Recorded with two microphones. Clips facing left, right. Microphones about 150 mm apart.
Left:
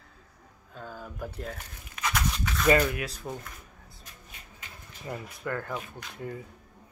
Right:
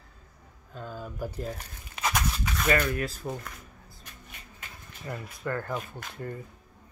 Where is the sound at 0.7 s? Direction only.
10° right (ahead or behind).